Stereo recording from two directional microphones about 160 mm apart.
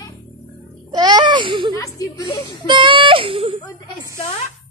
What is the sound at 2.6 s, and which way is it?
Speech, 30° right (ahead or behind).